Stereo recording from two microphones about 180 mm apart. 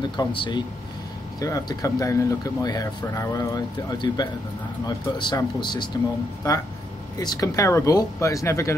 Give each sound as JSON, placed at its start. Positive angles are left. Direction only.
{"t": 0.2, "sound": "speech", "side_deg": 25}